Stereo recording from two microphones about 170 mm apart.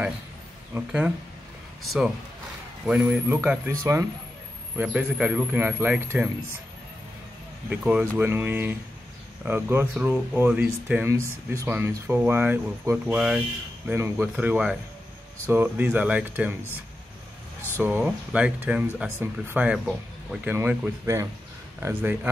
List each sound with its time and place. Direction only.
0.7 s speech: 10° right (ahead or behind)
2.9 s speech: 10° right (ahead or behind)
4.7 s speech: 5° right (ahead or behind)
7.7 s speech: 5° right (ahead or behind)
17.7 s speech: 10° right (ahead or behind)